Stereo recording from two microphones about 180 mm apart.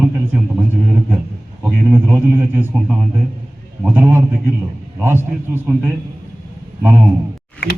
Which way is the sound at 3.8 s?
10° right (ahead or behind).